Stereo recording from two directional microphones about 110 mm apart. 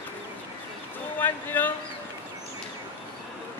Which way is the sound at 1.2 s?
15° left (ahead or behind).